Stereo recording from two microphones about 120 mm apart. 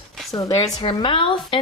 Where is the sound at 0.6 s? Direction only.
45° left (ahead or behind).